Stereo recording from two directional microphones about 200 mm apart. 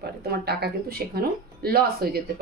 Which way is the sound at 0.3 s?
50° right (ahead or behind).